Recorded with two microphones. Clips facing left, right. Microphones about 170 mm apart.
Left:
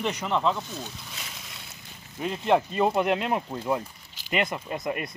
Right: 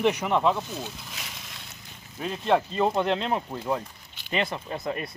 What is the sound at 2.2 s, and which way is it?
Speech, 15° left (ahead or behind).